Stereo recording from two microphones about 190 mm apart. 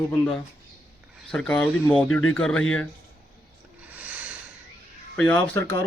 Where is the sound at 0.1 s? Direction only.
5° left (ahead or behind).